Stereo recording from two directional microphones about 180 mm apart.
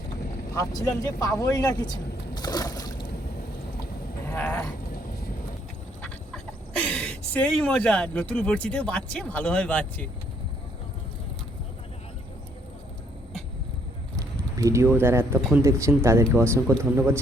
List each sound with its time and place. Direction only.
0.5 s speech: 20° left (ahead or behind)
4.3 s a sound: 10° left (ahead or behind)
6.0 s speech: 5° left (ahead or behind)
14.2 s a sound: 20° right (ahead or behind)
15.4 s speech: centre (ahead or behind)
15.6 s a man's voice: 15° right (ahead or behind)